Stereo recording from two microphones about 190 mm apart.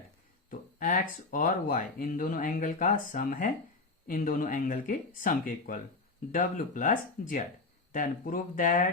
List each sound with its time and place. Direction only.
0.8 s speech: 45° left (ahead or behind)